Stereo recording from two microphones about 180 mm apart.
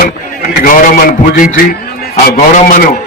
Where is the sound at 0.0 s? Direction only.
55° left (ahead or behind).